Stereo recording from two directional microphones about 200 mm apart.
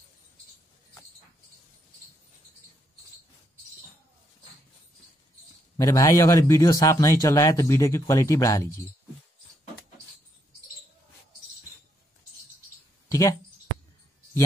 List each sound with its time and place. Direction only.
5.8 s speech: 15° left (ahead or behind)
13.1 s speech: 15° left (ahead or behind)